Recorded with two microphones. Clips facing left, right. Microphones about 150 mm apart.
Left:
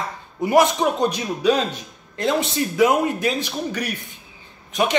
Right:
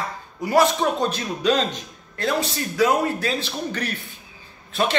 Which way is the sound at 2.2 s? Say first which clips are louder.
Left 3 dB; 20° left (ahead or behind).